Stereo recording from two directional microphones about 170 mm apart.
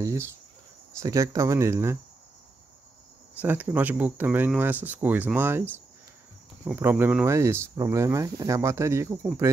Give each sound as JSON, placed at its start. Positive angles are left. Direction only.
{"t": 0.0, "sound": "cricket", "side_deg": -15}
{"t": 0.9, "sound": "speech", "side_deg": -20}
{"t": 3.3, "sound": "speech", "side_deg": -10}